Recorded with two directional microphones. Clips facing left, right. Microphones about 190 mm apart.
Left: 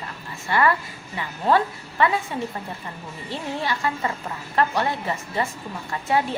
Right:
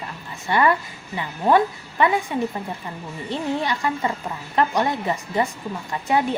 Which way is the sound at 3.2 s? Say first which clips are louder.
Right 4 dB; 20° right (ahead or behind).